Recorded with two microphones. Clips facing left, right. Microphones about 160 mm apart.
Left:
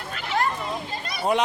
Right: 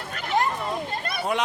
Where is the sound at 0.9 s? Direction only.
55° right (ahead or behind).